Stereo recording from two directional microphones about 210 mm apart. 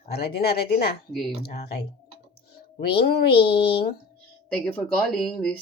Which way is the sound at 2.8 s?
50° left (ahead or behind).